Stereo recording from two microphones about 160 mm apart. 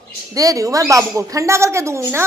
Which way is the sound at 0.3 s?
20° right (ahead or behind).